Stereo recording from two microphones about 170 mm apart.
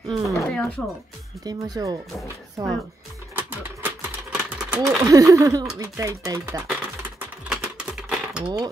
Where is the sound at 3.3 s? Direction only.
15° right (ahead or behind).